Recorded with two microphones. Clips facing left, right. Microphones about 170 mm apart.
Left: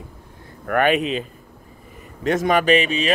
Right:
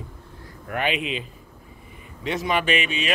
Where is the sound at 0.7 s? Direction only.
50° left (ahead or behind).